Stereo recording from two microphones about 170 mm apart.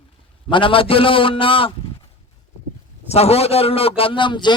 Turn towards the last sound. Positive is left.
turn(degrees=25)  # may be behind; listen again after turning